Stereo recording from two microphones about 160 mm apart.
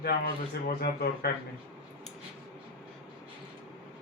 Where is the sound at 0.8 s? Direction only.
80° left.